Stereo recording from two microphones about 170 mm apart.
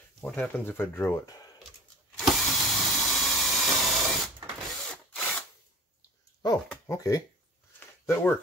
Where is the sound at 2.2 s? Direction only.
Centre (ahead or behind).